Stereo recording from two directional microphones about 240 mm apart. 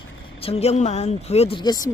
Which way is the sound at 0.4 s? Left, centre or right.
Left.